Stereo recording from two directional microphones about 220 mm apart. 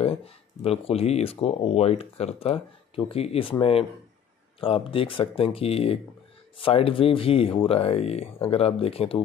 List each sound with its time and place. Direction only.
0.0 s speech: 25° left (ahead or behind)